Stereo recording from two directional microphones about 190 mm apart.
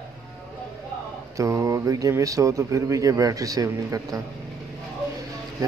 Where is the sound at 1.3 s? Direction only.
15° right (ahead or behind).